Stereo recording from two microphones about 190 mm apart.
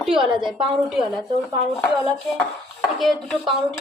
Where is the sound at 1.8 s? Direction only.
5° left (ahead or behind).